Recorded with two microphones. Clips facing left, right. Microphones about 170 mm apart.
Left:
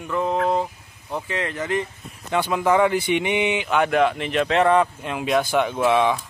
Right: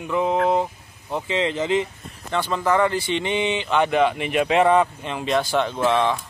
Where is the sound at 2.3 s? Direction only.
10° left (ahead or behind).